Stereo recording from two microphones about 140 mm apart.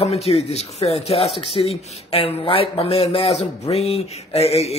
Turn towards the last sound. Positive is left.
turn(degrees=50)  # may be behind; listen again after turning